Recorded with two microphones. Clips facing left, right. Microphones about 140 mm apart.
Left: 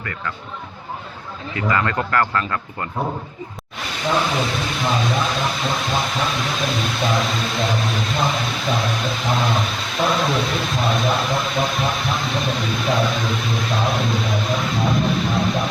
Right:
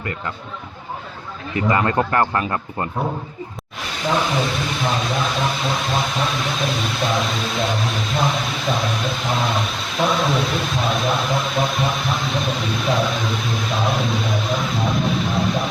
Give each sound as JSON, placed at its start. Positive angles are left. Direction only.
{"t": 1.5, "sound": "speech", "side_deg": -25}
{"t": 4.3, "sound": "speech", "side_deg": 0}